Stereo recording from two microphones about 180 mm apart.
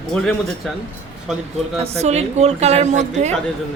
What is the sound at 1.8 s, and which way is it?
A woman's voice, 35° right (ahead or behind).